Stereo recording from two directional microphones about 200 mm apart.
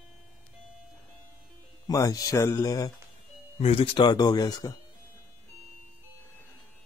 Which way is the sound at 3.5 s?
30° left (ahead or behind).